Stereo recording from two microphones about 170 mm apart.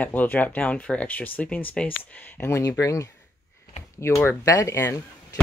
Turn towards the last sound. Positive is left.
turn(degrees=20)  # may be behind; listen again after turning